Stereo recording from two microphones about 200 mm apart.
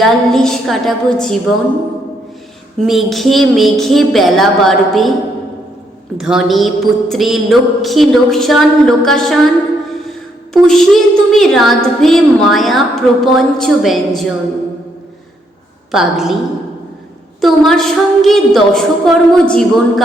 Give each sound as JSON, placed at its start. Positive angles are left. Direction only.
{"t": 0.0, "sound": "a woman's voice", "side_deg": 0}
{"t": 2.8, "sound": "a woman's voice", "side_deg": 0}
{"t": 6.1, "sound": "a woman's voice", "side_deg": 0}
{"t": 15.9, "sound": "a woman's voice", "side_deg": 0}
{"t": 17.4, "sound": "a woman's voice", "side_deg": 0}